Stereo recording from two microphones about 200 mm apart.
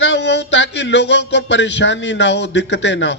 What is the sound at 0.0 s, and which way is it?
A man's voice, 60° left (ahead or behind).